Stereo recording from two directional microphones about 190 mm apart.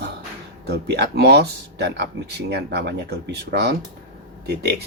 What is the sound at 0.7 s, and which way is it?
Speech, 60° right (ahead or behind).